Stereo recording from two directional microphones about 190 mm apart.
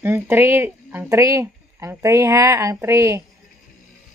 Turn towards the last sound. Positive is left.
turn(degrees=-15)  # may be behind; listen again after turning